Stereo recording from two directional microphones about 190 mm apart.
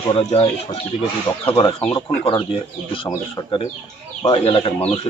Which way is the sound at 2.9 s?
25° left (ahead or behind).